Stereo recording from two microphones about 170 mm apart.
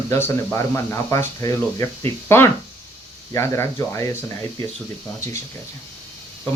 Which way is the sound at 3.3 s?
15° left (ahead or behind).